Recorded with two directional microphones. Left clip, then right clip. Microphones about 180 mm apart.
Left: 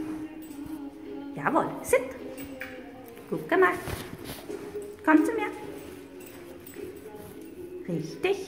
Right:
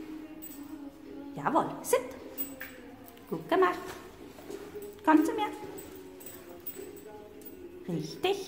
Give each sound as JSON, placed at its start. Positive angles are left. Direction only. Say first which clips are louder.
{"t": 1.3, "sound": "speech", "louder": "left 2 dB", "side_deg": -10}
{"t": 3.3, "sound": "speech", "louder": "left 3 dB", "side_deg": -15}
{"t": 5.0, "sound": "speech", "louder": "left 2 dB", "side_deg": -10}
{"t": 8.0, "sound": "speech", "louder": "left 2 dB", "side_deg": -15}